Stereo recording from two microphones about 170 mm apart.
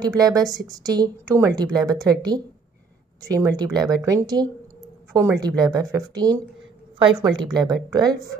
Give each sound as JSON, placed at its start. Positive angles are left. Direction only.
{"t": 0.0, "sound": "a woman's voice", "side_deg": -20}